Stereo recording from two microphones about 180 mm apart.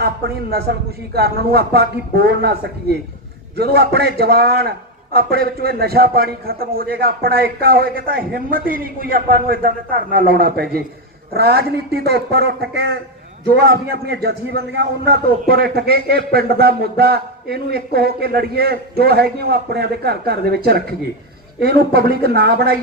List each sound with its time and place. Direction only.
0.7 s a man's voice: 60° right (ahead or behind)
3.5 s a man's voice: 60° right (ahead or behind)